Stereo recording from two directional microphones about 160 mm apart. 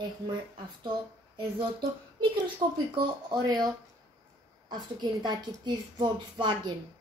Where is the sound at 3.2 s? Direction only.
25° right (ahead or behind).